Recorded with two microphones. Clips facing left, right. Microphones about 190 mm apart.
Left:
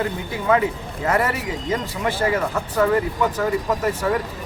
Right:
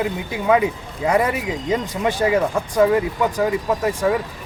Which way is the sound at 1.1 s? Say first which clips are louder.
Right 3 dB; 15° right (ahead or behind).